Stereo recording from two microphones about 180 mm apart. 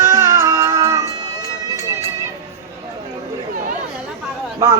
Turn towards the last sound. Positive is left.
turn(degrees=-20)  # may be behind; listen again after turning